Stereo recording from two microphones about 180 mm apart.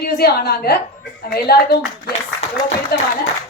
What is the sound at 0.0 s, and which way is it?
A woman's voice, 60° left (ahead or behind).